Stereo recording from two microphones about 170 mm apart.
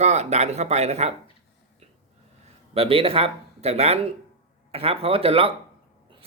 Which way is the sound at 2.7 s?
35° right (ahead or behind).